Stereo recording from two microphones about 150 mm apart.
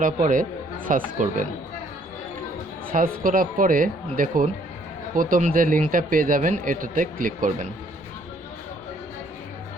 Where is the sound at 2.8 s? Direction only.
70° right (ahead or behind).